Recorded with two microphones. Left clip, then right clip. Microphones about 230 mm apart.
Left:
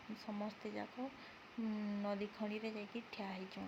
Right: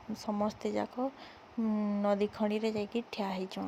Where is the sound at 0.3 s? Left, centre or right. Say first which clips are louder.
Right 13 dB; right.